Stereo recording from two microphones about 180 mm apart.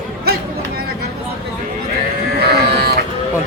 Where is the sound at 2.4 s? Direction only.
65° right (ahead or behind).